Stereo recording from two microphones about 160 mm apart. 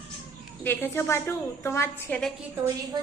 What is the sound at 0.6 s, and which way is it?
A woman's voice, 15° left (ahead or behind).